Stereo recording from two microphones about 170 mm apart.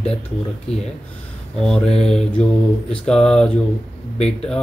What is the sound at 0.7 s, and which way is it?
Speech, 5° left (ahead or behind).